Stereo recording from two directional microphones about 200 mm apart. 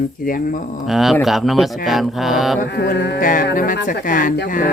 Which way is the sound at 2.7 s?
55° left (ahead or behind).